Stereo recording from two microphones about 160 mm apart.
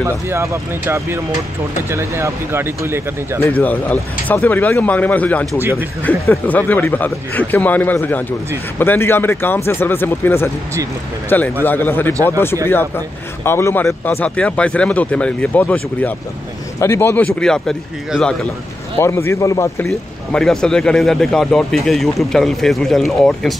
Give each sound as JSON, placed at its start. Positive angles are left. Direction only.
{"t": 0.0, "sound": "speech", "side_deg": -15}
{"t": 3.5, "sound": "speech", "side_deg": 10}
{"t": 5.5, "sound": "speech", "side_deg": -15}
{"t": 6.0, "sound": "speech", "side_deg": 10}
{"t": 18.9, "sound": "speech", "side_deg": 15}
{"t": 19.9, "sound": "speech", "side_deg": 5}